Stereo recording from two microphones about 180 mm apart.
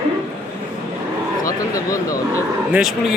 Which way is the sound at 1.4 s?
20° left (ahead or behind).